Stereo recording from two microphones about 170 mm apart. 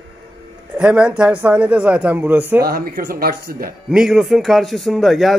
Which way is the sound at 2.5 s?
60° right (ahead or behind).